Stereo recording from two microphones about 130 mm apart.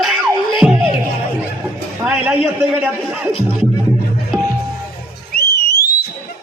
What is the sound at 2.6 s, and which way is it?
Speech, 15° right (ahead or behind).